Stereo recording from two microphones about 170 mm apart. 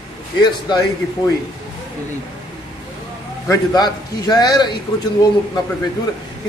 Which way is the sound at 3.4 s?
20° left (ahead or behind).